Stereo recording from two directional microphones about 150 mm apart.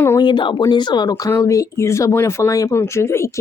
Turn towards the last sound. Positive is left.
turn(degrees=15)  # may be behind; listen again after turning